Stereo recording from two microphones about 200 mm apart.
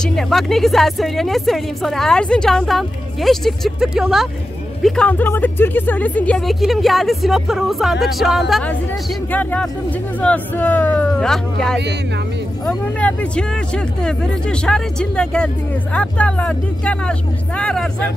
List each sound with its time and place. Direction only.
0.0 s speech: centre (ahead or behind)